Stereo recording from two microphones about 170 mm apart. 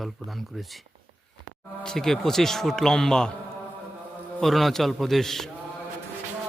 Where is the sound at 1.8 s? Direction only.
5° left (ahead or behind).